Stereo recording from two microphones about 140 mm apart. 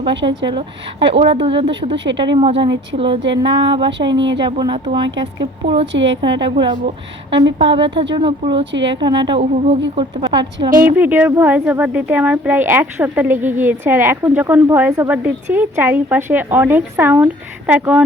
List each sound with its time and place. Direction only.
0.0 s speech: 35° right (ahead or behind)
9.4 s speech: 45° right (ahead or behind)
10.8 s speech: 15° right (ahead or behind)